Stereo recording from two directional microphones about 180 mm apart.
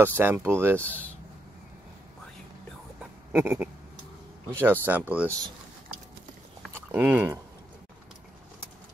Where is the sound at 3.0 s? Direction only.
10° right (ahead or behind).